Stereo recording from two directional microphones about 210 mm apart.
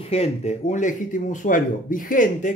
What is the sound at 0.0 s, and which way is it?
Speech, 30° left (ahead or behind).